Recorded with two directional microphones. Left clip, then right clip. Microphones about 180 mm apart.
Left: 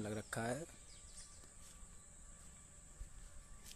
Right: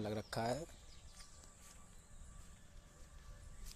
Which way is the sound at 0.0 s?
Centre (ahead or behind).